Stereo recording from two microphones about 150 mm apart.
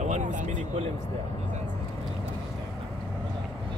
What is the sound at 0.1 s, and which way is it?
Speech, 55° right (ahead or behind).